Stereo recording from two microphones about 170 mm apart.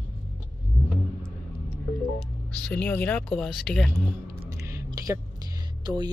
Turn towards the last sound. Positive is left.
turn(degrees=-25)  # may be behind; listen again after turning